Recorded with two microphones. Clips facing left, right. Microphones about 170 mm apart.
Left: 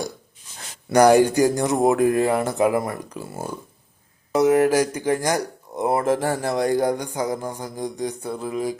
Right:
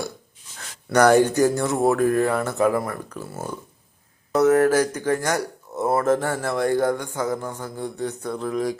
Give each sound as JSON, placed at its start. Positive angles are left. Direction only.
{"t": 0.9, "sound": "speech", "side_deg": 10}